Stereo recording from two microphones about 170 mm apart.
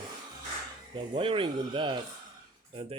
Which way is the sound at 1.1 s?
30° right (ahead or behind).